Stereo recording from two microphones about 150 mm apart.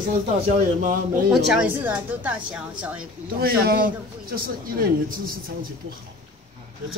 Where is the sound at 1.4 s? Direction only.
10° right (ahead or behind).